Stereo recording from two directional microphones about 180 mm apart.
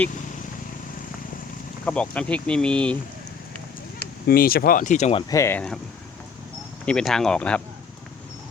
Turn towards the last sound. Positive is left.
turn(degrees=5)  # may be behind; listen again after turning